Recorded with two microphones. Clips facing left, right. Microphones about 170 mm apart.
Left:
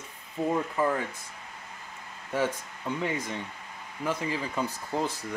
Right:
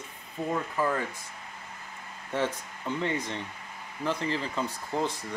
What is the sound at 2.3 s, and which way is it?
Speech, 10° left (ahead or behind).